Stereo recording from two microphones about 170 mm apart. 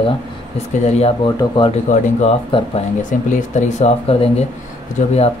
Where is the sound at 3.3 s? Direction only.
45° left (ahead or behind).